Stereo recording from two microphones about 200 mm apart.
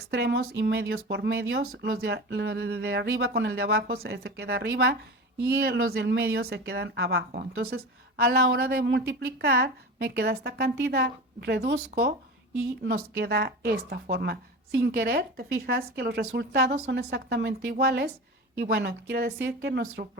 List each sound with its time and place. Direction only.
0.0 s a woman's voice: 55° right (ahead or behind)